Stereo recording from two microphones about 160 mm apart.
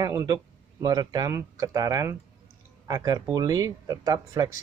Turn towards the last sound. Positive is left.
turn(degrees=-25)  # may be behind; listen again after turning